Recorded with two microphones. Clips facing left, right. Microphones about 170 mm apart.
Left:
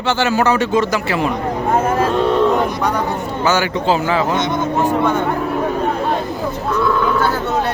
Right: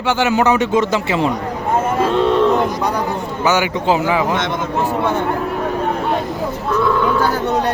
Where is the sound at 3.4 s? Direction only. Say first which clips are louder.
Even; 15° right (ahead or behind).